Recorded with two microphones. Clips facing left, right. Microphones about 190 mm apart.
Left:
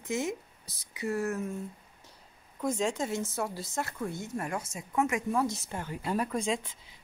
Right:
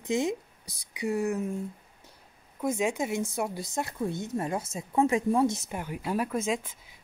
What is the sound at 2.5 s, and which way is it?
Speech, 10° right (ahead or behind).